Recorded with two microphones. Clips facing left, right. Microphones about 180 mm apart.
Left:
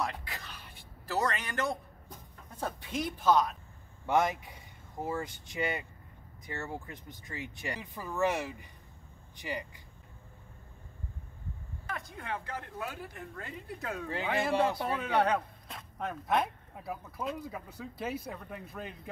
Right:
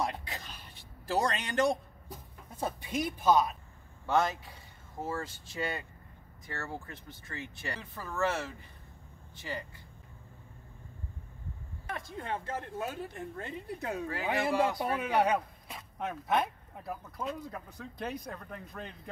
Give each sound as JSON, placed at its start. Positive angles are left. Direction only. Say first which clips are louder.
{"t": 0.0, "sound": "a sound", "louder": "right 1 dB", "side_deg": -20}
{"t": 1.0, "sound": "speech", "louder": "right 1 dB", "side_deg": -25}
{"t": 2.6, "sound": "speech", "louder": "right 2 dB", "side_deg": -10}
{"t": 4.0, "sound": "speech", "louder": "left 1 dB", "side_deg": 15}
{"t": 11.9, "sound": "speech", "louder": "right 2 dB", "side_deg": -25}
{"t": 14.5, "sound": "a man's voice", "louder": "left 1 dB", "side_deg": 25}
{"t": 15.0, "sound": "speech", "louder": "even", "side_deg": -5}